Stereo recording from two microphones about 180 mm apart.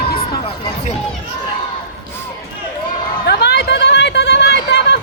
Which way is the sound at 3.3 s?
65° left (ahead or behind).